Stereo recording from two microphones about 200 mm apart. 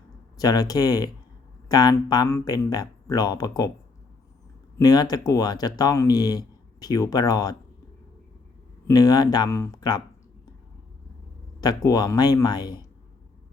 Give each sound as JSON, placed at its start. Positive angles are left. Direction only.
{"t": 0.3, "sound": "speech", "side_deg": 20}
{"t": 4.8, "sound": "speech", "side_deg": 20}
{"t": 8.9, "sound": "speech", "side_deg": 20}
{"t": 11.6, "sound": "speech", "side_deg": 20}